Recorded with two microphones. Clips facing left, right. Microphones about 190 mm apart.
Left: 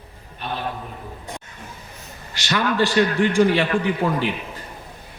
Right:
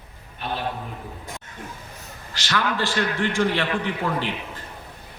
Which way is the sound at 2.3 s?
20° left (ahead or behind).